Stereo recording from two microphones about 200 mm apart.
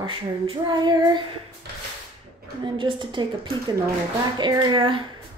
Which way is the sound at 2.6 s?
25° right (ahead or behind).